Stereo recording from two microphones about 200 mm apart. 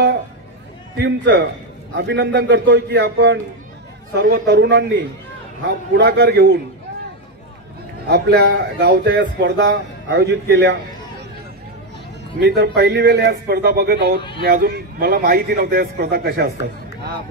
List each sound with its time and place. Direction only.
0.9 s speech: 60° right (ahead or behind)
5.9 s speech: 60° right (ahead or behind)
8.1 s speech: 50° right (ahead or behind)
12.4 s a man's voice: 55° right (ahead or behind)